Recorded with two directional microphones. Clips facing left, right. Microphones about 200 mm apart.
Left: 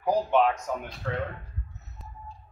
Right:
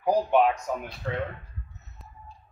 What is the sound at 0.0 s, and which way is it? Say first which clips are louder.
Speech: right 1 dB; 10° right (ahead or behind).